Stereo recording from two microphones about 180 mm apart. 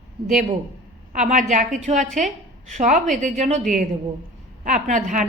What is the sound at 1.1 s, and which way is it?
A woman's voice, 45° right (ahead or behind).